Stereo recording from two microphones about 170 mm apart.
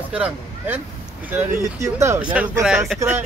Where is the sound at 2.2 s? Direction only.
5° right (ahead or behind).